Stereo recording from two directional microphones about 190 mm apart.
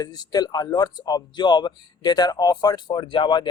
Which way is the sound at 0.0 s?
20° left (ahead or behind).